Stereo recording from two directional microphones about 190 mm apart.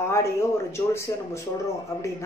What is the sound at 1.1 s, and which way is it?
Speech, 15° left (ahead or behind).